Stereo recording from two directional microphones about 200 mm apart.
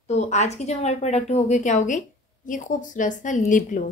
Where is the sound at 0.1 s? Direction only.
35° left (ahead or behind).